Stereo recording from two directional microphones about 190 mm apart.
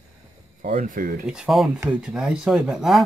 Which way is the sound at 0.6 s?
40° right (ahead or behind).